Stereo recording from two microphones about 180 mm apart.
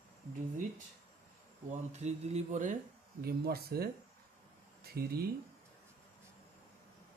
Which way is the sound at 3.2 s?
60° right (ahead or behind).